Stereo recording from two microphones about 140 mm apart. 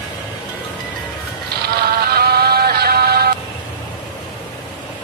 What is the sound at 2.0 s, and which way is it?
Music, 90° right.